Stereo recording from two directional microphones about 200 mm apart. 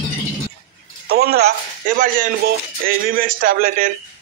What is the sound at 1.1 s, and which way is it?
Speech, 50° right (ahead or behind).